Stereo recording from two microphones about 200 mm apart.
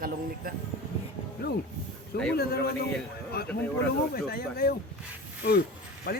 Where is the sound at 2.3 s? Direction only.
50° left (ahead or behind).